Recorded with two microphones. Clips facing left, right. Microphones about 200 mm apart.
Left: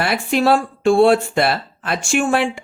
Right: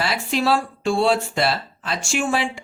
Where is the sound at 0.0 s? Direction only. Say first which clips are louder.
Left 5 dB; 55° left (ahead or behind).